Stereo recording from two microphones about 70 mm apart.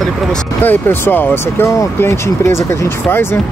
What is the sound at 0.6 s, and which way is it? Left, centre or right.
Speech, left.